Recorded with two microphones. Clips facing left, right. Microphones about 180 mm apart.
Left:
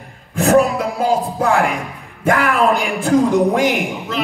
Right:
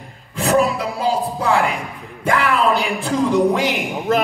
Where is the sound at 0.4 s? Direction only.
50° left (ahead or behind).